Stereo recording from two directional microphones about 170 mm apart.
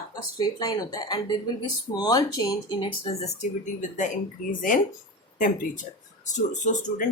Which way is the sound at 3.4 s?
45° left (ahead or behind).